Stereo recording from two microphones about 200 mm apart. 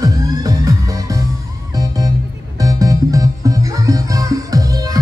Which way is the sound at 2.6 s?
15° right (ahead or behind).